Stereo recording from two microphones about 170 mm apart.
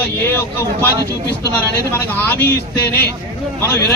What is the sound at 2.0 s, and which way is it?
Speech, 15° left (ahead or behind).